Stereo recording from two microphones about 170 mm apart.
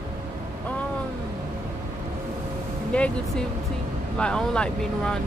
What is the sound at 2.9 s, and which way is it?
Speech, 5° left (ahead or behind).